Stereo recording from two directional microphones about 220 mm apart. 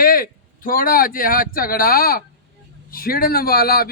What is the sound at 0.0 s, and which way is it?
Speech, 40° left (ahead or behind).